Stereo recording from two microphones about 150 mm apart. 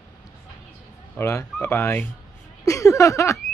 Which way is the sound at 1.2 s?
20° left (ahead or behind).